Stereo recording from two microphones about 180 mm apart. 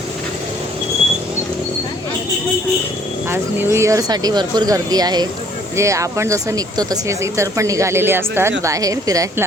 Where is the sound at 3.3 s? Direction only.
10° right (ahead or behind).